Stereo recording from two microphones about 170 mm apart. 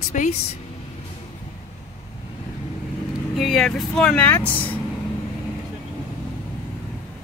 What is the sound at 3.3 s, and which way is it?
Speech, centre (ahead or behind).